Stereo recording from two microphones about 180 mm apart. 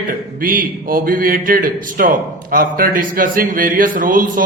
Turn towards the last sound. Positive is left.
turn(degrees=-50)  # may be behind; listen again after turning